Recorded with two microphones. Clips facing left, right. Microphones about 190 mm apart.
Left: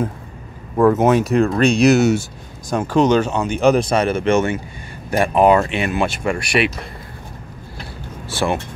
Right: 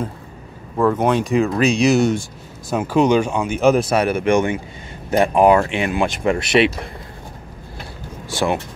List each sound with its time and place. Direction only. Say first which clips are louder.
0.7 s speech: left 3 dB; 5° left (ahead or behind)
2.7 s speech: even; 10° right (ahead or behind); by 6.9 s 25° right (ahead or behind)
8.3 s speech: even; 15° right (ahead or behind)